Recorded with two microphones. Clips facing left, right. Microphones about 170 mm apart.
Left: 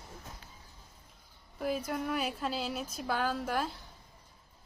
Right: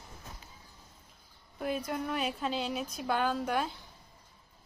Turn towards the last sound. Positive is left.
turn(degrees=0)  # may be behind; listen again after turning